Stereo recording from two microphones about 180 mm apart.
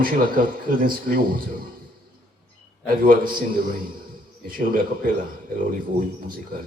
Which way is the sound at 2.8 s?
50° right (ahead or behind).